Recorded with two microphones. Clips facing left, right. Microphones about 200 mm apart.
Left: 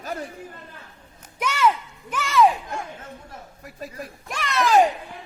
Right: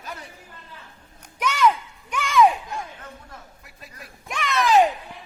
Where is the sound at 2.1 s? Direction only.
Centre (ahead or behind).